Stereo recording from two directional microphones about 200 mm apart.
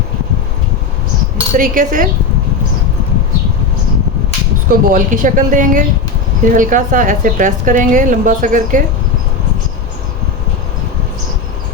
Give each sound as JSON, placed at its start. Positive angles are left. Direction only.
{"t": 1.5, "sound": "speech", "side_deg": -40}
{"t": 4.7, "sound": "a woman's voice", "side_deg": -45}